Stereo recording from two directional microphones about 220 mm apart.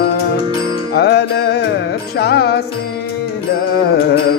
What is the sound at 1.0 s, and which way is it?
Music, 50° left (ahead or behind).